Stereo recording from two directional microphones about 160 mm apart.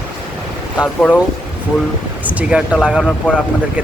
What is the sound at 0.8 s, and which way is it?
Speech, 10° left (ahead or behind).